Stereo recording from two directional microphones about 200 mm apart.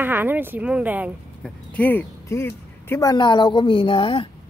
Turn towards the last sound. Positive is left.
turn(degrees=25)  # may be behind; listen again after turning